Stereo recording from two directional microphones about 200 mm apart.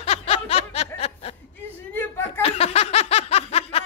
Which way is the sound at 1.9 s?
10° left (ahead or behind).